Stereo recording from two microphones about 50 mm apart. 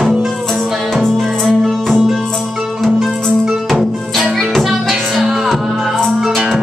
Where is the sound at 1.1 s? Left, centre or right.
Centre.